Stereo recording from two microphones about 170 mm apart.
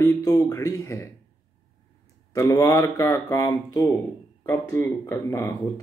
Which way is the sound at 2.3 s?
20° left (ahead or behind).